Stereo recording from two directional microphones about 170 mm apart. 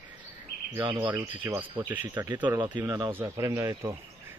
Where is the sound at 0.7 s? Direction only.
25° right (ahead or behind).